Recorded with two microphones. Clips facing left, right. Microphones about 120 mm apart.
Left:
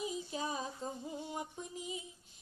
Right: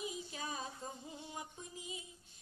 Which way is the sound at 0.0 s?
25° left (ahead or behind).